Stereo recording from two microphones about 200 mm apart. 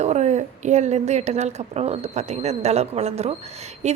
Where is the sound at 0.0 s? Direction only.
35° right (ahead or behind).